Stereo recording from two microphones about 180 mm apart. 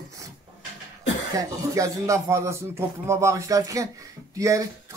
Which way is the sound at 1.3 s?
20° right (ahead or behind).